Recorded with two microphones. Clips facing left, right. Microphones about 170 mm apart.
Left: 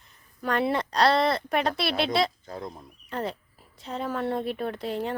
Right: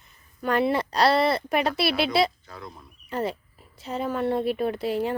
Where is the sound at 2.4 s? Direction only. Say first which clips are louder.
Left 5 dB; 40° left (ahead or behind).